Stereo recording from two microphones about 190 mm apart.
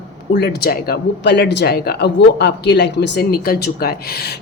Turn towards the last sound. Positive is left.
turn(degrees=55)  # may be behind; listen again after turning